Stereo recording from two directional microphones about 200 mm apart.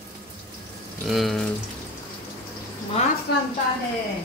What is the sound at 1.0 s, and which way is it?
Speech, centre (ahead or behind).